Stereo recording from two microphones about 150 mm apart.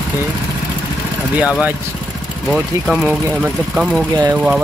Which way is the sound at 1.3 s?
10° right (ahead or behind).